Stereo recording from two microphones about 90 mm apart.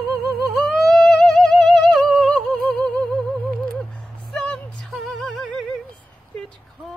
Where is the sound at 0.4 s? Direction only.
5° left (ahead or behind).